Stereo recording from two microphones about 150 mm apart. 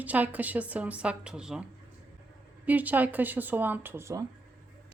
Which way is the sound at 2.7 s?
10° right (ahead or behind).